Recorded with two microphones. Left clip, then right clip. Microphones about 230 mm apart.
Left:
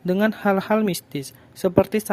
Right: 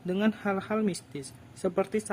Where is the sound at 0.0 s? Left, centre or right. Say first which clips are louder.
Left 9 dB; left.